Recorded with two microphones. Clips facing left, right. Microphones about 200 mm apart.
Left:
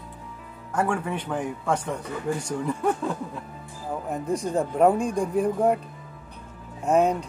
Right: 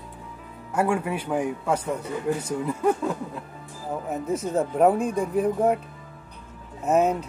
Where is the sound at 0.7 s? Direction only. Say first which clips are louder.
Right 2 dB; 10° right (ahead or behind).